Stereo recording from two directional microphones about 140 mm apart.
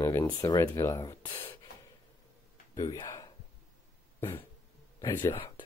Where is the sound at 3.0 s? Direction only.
25° left (ahead or behind).